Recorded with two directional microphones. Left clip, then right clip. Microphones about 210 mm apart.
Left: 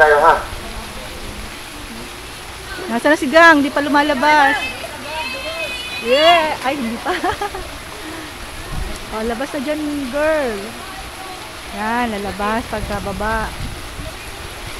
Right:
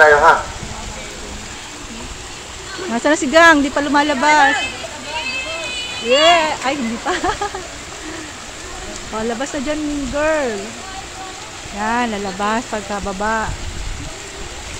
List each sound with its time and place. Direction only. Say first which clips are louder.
0.0 s speech: right 1 dB; 30° right (ahead or behind)
2.9 s speech: left 1 dB; centre (ahead or behind)
6.0 s speech: even; centre (ahead or behind)
9.4 s speech: even; 5° right (ahead or behind)
11.8 s speech: right 1 dB; 5° right (ahead or behind)